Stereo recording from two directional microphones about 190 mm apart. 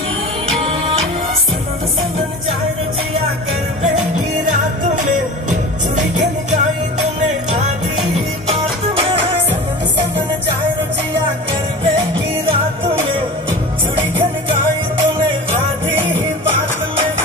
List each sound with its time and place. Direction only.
5.5 s music: 40° right (ahead or behind)
8.9 s music: 30° right (ahead or behind)